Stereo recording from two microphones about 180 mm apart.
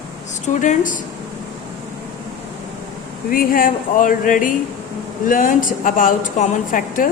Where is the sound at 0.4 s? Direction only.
45° left (ahead or behind).